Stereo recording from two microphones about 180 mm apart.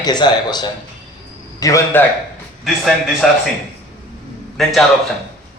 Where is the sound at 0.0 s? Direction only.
25° left (ahead or behind).